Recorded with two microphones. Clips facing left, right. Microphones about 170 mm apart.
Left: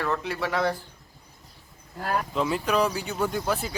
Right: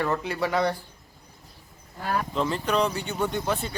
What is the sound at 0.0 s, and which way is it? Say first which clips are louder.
Speech: right 2 dB; centre (ahead or behind).